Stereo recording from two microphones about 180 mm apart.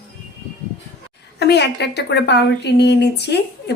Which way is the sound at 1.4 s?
70° left (ahead or behind).